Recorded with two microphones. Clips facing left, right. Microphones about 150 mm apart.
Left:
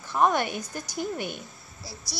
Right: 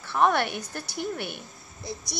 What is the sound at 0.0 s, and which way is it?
Speech, 15° left (ahead or behind).